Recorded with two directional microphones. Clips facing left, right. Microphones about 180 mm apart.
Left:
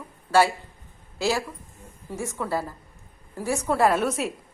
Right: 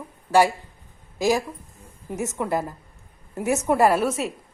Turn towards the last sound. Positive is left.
turn(degrees=0)  # may be behind; listen again after turning